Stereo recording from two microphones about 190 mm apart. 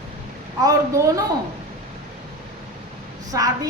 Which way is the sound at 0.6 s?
20° right (ahead or behind).